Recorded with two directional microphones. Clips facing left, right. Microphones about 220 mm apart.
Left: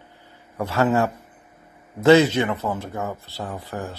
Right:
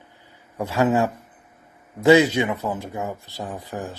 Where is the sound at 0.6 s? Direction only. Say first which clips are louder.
Even; 15° right (ahead or behind).